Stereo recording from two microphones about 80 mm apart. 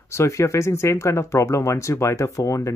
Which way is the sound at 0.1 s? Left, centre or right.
Left.